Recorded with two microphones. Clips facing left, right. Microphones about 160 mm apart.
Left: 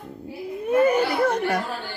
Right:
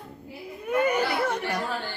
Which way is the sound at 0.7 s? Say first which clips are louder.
Left 5 dB; 30° left (ahead or behind).